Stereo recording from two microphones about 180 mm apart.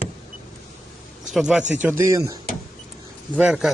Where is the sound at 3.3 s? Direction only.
Centre (ahead or behind).